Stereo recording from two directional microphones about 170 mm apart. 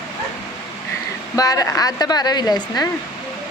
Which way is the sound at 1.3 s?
20° left (ahead or behind).